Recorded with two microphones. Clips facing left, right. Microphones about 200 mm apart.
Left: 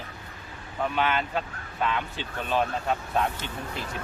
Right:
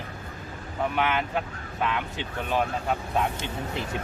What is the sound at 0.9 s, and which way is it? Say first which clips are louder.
Speech: even; 15° right (ahead or behind).